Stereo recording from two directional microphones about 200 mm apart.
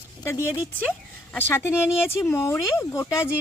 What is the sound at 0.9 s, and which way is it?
Speech, 10° left (ahead or behind).